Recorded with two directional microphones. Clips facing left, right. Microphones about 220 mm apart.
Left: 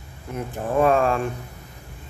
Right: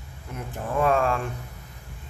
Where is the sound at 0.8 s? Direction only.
25° left (ahead or behind).